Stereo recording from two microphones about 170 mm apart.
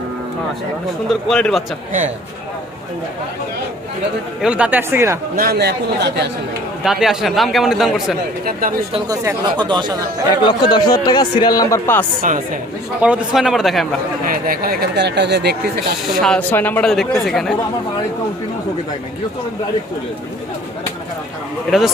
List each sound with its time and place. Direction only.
1.3 s speech: 5° left (ahead or behind)
4.4 s speech: 5° right (ahead or behind)
5.4 s speech: 70° right (ahead or behind)
6.8 s speech: centre (ahead or behind)
8.4 s speech: 55° right (ahead or behind)
9.0 s speech: 20° right (ahead or behind)
10.4 s speech: 25° left (ahead or behind)
12.2 s speech: 50° right (ahead or behind)
13.0 s speech: 5° right (ahead or behind)
14.3 s speech: 55° right (ahead or behind)
16.0 s speech: 5° left (ahead or behind)
21.7 s speech: 5° right (ahead or behind)